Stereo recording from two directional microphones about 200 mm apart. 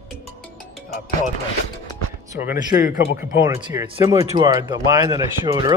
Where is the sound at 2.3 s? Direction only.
10° right (ahead or behind).